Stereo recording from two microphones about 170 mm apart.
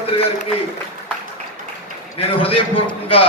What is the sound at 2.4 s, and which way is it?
Speech, 35° left (ahead or behind).